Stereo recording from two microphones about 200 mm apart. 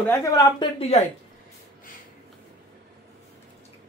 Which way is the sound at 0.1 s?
15° left (ahead or behind).